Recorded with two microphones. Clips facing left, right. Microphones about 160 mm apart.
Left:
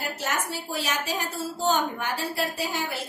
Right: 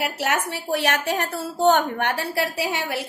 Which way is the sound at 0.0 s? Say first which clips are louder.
Right 6 dB; 70° right (ahead or behind).